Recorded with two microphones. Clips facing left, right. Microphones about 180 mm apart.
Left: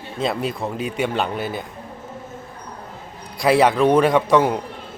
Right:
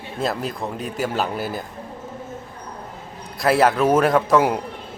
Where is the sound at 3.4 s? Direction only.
Centre (ahead or behind).